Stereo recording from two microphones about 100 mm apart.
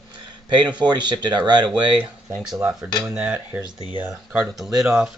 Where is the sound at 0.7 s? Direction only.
50° right (ahead or behind).